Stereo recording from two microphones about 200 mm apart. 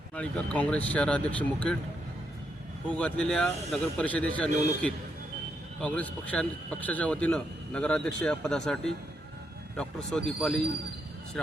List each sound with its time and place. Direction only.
0.2 s speech: 5° left (ahead or behind)
2.9 s speech: 5° left (ahead or behind)